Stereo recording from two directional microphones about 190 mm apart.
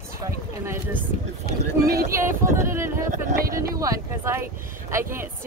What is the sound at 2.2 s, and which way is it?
Speech, 15° right (ahead or behind).